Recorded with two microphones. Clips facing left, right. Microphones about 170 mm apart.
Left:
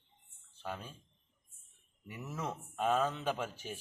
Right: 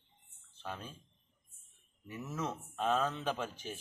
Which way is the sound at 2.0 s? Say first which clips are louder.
Right 2 dB; 10° left (ahead or behind).